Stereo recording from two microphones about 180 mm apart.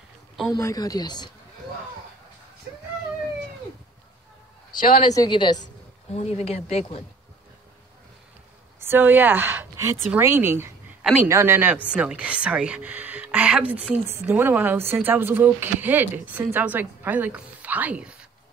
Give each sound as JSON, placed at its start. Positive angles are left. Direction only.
{"t": 0.5, "sound": "speech", "side_deg": 15}
{"t": 4.9, "sound": "speech", "side_deg": 20}
{"t": 6.1, "sound": "speech", "side_deg": 35}
{"t": 8.7, "sound": "a woman's voice", "side_deg": -10}